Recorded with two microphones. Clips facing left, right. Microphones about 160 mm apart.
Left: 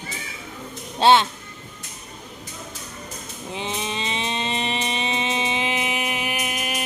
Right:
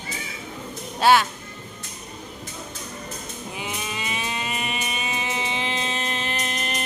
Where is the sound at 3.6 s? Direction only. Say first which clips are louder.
Left 4 dB; 25° left (ahead or behind).